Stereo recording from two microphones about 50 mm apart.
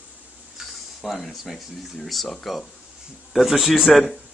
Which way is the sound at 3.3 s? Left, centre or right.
Centre.